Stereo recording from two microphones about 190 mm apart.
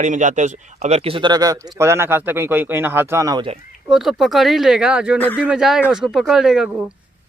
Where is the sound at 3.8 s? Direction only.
Centre (ahead or behind).